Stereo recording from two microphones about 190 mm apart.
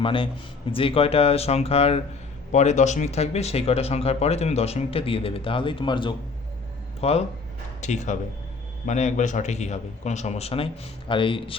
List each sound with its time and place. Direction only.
0.0 s a man's voice: 25° left (ahead or behind)